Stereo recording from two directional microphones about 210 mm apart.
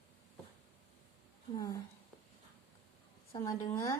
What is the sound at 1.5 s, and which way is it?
Speech, 15° left (ahead or behind).